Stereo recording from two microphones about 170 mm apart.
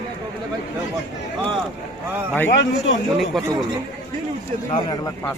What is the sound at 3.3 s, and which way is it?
Speech, centre (ahead or behind).